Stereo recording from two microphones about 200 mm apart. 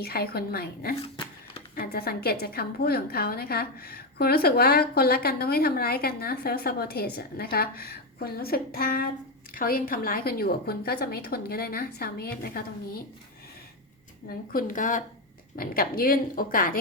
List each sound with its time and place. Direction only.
0.0 s a woman's voice: 50° left (ahead or behind)
1.1 s a sound: 25° left (ahead or behind)
1.7 s a woman's voice: 50° left (ahead or behind)
14.5 s a woman's voice: 40° left (ahead or behind)